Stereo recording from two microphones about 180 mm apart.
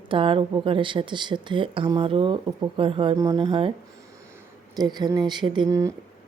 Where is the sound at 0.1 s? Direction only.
30° right (ahead or behind).